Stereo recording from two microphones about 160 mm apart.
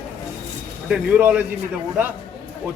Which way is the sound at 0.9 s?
10° right (ahead or behind).